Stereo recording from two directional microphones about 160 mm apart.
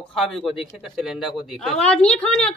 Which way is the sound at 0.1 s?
Centre (ahead or behind).